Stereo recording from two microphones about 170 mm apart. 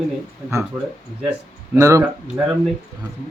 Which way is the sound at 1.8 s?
15° right (ahead or behind).